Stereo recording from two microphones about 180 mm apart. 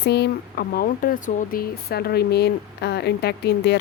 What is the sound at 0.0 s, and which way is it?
Speech, 70° left (ahead or behind).